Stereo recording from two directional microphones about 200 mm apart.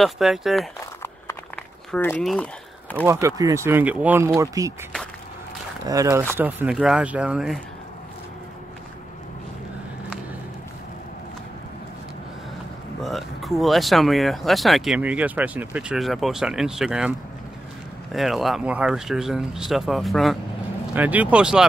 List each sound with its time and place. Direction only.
0.0 s speech: centre (ahead or behind)
0.7 s crumpling: 15° left (ahead or behind)
1.9 s speech: 5° left (ahead or behind)
3.1 s speech: 15° right (ahead or behind)
5.9 s speech: 15° right (ahead or behind)
13.0 s speech: centre (ahead or behind)
18.1 s speech: centre (ahead or behind)